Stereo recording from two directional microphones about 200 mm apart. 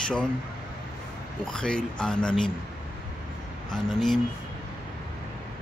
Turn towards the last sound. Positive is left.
turn(degrees=0)  # may be behind; listen again after turning